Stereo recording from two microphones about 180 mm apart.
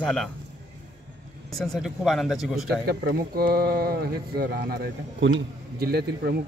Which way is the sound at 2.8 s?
60° right (ahead or behind).